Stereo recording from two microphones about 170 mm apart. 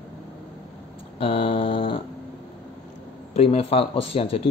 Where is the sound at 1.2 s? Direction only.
35° left (ahead or behind).